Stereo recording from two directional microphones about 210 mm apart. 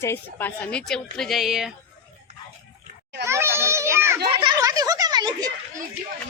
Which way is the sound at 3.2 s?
10° right (ahead or behind).